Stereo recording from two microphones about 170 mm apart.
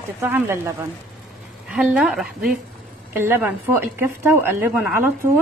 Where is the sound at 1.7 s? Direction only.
5° right (ahead or behind).